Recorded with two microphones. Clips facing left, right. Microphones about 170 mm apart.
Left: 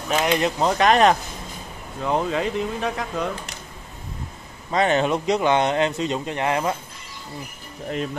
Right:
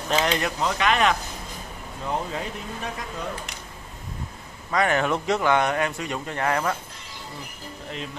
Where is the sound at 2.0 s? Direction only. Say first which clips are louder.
Left 6 dB; 90° left.